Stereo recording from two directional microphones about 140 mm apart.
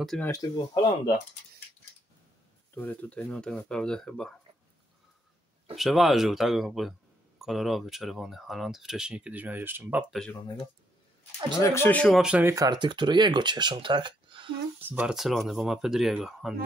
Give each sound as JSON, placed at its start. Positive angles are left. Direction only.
{"t": 0.4, "sound": "speech", "side_deg": 30}
{"t": 2.7, "sound": "speech", "side_deg": 10}
{"t": 5.8, "sound": "speech", "side_deg": 0}
{"t": 11.6, "sound": "speech", "side_deg": 15}
{"t": 12.2, "sound": "speech", "side_deg": -5}
{"t": 12.4, "sound": "speech", "side_deg": -25}
{"t": 14.8, "sound": "speech", "side_deg": -15}